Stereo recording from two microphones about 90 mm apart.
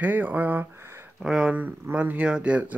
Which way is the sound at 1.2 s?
5° right (ahead or behind).